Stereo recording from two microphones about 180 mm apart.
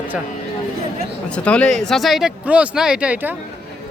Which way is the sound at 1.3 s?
5° left (ahead or behind).